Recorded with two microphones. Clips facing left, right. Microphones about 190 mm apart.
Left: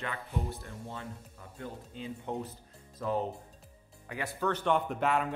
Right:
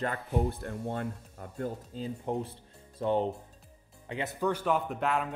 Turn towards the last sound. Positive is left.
turn(degrees=0)  # may be behind; listen again after turning